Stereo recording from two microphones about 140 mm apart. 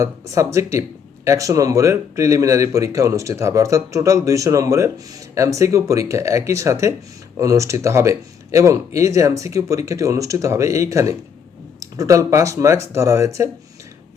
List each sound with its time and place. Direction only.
0.0 s speech: 20° right (ahead or behind)